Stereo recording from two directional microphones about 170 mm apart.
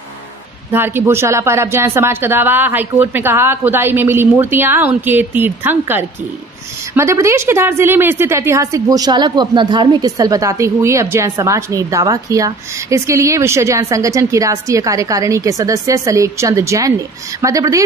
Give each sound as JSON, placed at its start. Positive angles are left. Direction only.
{"t": 0.7, "sound": "a woman's voice", "side_deg": -15}